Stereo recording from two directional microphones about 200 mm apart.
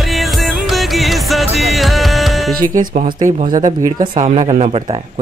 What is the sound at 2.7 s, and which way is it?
Speech, 40° right (ahead or behind).